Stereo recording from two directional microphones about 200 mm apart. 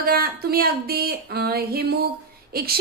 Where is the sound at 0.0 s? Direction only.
50° right (ahead or behind).